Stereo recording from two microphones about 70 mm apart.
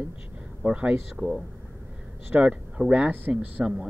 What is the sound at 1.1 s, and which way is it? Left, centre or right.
Speech, centre.